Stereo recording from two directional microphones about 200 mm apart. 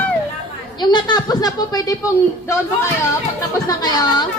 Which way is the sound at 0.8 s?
20° left (ahead or behind).